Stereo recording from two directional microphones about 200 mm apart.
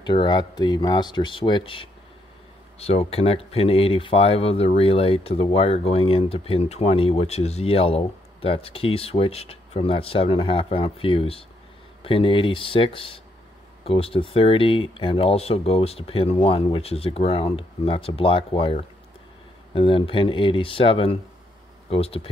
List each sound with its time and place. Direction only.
0.0 s speech: 20° left (ahead or behind)